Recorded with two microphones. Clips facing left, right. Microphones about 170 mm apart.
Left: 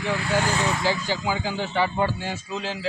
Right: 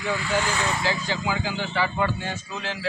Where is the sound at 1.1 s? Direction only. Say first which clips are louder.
Left 1 dB; 35° left (ahead or behind).